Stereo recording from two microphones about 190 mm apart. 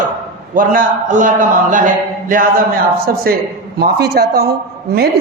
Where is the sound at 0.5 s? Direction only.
45° right (ahead or behind).